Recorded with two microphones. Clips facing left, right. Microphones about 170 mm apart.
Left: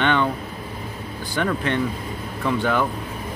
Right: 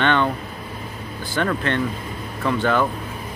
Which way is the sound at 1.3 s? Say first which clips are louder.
Right 1 dB; 10° left (ahead or behind).